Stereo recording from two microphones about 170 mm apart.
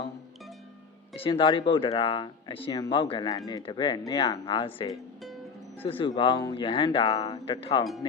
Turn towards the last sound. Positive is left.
turn(degrees=30)  # may be behind; listen again after turning